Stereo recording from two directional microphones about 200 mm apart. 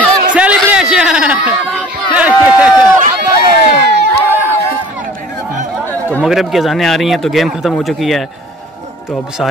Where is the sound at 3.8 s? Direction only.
55° right (ahead or behind).